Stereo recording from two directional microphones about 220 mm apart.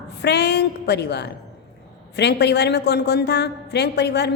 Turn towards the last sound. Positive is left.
turn(degrees=50)  # may be behind; listen again after turning